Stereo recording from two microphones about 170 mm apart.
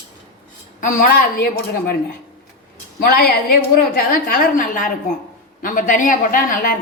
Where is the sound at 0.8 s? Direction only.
55° left (ahead or behind).